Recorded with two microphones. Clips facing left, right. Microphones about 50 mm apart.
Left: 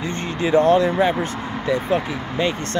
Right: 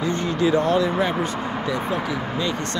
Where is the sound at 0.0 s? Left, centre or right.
Left.